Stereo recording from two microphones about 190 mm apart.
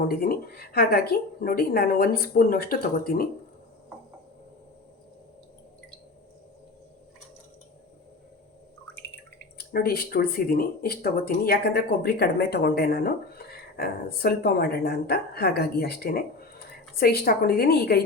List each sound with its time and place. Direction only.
0.1 s a woman's voice: 50° left (ahead or behind)
9.6 s speech: 55° left (ahead or behind)